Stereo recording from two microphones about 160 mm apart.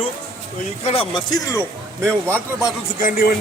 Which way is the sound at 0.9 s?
35° left (ahead or behind).